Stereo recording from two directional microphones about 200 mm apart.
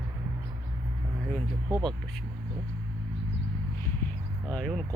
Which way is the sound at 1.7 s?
20° right (ahead or behind).